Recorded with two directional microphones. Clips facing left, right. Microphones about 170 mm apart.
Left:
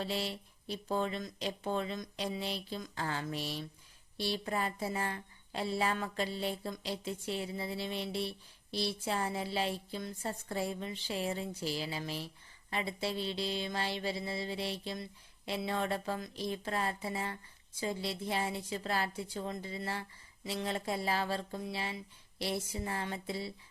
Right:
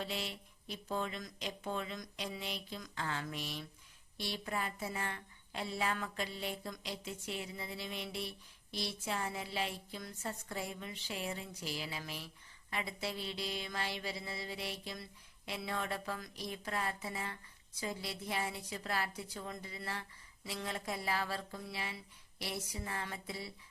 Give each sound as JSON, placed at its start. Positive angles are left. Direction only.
{"t": 0.0, "sound": "a woman's voice", "side_deg": 35}